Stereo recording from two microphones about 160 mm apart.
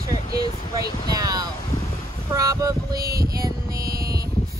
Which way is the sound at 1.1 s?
25° right (ahead or behind).